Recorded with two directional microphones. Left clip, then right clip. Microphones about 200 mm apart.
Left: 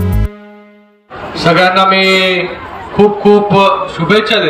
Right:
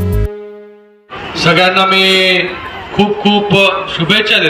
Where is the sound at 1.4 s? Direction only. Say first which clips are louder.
Left 1 dB; 55° left (ahead or behind).